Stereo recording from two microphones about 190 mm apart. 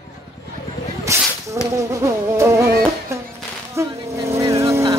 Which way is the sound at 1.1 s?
15° right (ahead or behind).